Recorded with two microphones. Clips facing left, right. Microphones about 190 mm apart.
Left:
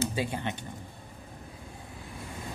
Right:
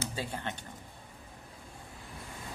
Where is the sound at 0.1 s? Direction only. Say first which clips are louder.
Left 5 dB; 15° left (ahead or behind).